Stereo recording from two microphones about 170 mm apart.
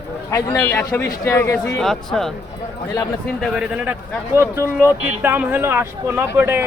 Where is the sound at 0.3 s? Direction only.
15° left (ahead or behind).